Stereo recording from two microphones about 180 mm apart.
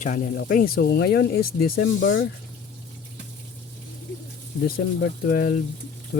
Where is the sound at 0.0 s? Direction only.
50° left (ahead or behind); by 2.2 s 90° left.